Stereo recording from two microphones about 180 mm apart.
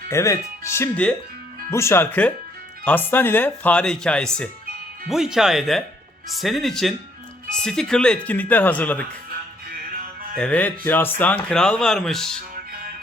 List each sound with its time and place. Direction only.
0.1 s speech: 15° left (ahead or behind)
10.3 s speech: 5° left (ahead or behind)